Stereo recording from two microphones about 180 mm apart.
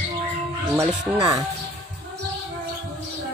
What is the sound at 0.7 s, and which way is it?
Speech, 20° right (ahead or behind).